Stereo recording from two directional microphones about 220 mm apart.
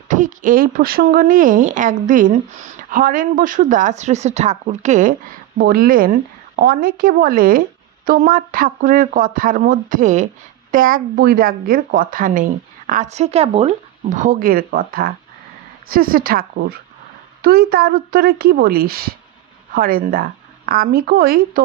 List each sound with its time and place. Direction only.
0.1 s speech: 35° right (ahead or behind)